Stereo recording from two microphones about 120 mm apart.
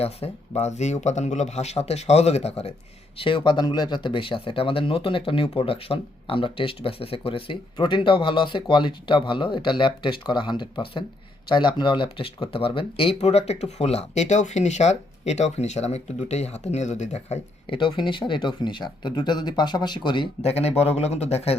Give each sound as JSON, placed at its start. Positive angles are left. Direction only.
{"t": 0.0, "sound": "speech", "side_deg": 60}
{"t": 3.2, "sound": "speech", "side_deg": 45}
{"t": 17.7, "sound": "speech", "side_deg": 45}
{"t": 20.4, "sound": "speech", "side_deg": 60}